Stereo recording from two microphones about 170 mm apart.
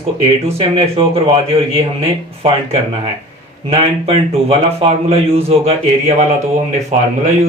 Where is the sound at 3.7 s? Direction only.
35° right (ahead or behind).